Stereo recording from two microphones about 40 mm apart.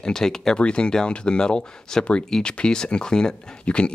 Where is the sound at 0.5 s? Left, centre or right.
Left.